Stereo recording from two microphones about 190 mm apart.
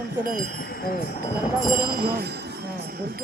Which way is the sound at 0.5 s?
55° left (ahead or behind).